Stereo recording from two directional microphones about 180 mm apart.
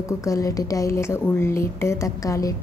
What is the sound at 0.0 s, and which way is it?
A woman's voice, 20° left (ahead or behind).